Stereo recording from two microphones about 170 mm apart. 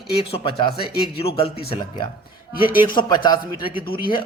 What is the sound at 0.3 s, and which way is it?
Speech, 35° left (ahead or behind).